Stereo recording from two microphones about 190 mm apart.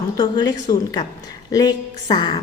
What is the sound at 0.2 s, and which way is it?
A woman's voice, 20° left (ahead or behind).